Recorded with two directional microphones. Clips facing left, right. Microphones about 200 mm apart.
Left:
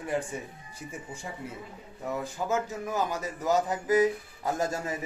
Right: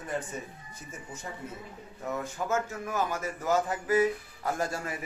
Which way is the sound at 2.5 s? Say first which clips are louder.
Left 1 dB; 15° left (ahead or behind).